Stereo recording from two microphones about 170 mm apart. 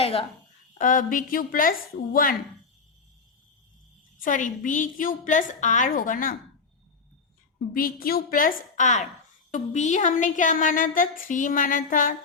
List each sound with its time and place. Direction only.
0.0 s speech: 35° left (ahead or behind)
0.8 s speech: 50° left (ahead or behind)
4.2 s speech: 50° left (ahead or behind)
7.7 s a woman's voice: 55° left (ahead or behind)